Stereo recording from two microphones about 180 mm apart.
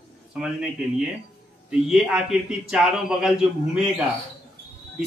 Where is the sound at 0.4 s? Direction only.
5° right (ahead or behind).